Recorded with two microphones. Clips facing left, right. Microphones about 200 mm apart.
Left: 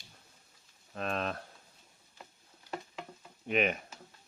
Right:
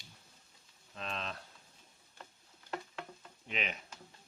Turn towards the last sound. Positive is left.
turn(degrees=50)  # may be behind; listen again after turning